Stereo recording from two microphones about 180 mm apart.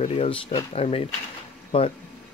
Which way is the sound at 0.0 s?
35° left (ahead or behind).